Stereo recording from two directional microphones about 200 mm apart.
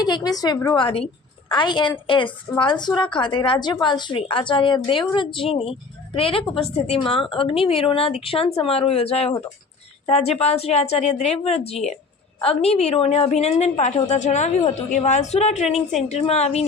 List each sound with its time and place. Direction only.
0.0 s a woman's voice: 20° left (ahead or behind)